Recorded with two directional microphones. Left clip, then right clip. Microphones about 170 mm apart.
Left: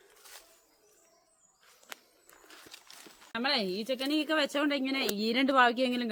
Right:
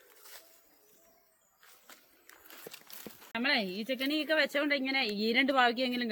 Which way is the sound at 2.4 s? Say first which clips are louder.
Right 1 dB; 75° right (ahead or behind).